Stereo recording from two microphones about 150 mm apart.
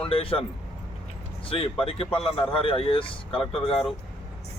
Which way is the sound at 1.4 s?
40° left (ahead or behind).